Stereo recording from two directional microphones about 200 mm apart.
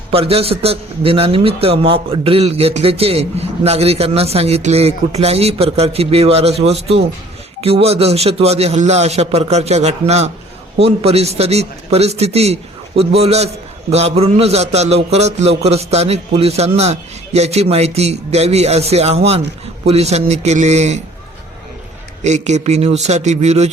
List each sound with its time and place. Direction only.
0.1 s a man's voice: 30° right (ahead or behind)
22.2 s a man's voice: 35° right (ahead or behind)